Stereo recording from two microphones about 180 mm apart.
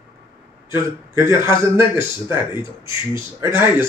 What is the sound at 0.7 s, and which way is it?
Speech, 15° right (ahead or behind).